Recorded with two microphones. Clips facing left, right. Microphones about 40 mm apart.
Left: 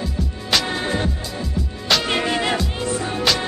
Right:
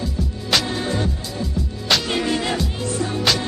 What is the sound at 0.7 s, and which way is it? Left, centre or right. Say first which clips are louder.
Music: left 1 dB; left.